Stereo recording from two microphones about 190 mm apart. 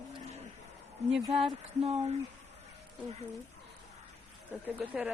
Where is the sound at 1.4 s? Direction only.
30° right (ahead or behind).